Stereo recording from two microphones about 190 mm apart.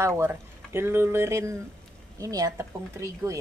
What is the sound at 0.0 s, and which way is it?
A woman's voice, 15° right (ahead or behind).